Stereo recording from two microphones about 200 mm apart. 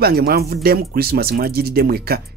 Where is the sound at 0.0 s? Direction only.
50° right (ahead or behind).